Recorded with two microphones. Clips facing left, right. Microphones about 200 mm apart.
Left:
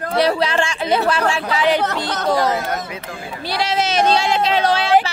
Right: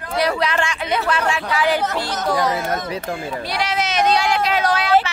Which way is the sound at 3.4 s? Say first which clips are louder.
Left 5 dB; 30° left (ahead or behind).